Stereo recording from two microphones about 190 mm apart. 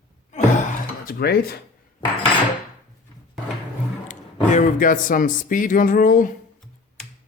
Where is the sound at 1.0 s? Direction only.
55° left (ahead or behind).